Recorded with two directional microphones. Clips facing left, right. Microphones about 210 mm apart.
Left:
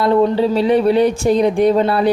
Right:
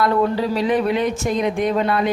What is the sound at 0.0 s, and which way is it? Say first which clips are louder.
Speech: left 5 dB; 25° left (ahead or behind).